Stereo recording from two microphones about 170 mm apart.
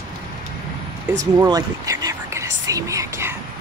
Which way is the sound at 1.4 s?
20° right (ahead or behind).